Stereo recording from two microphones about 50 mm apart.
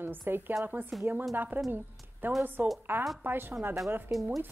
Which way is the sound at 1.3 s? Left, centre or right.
Right.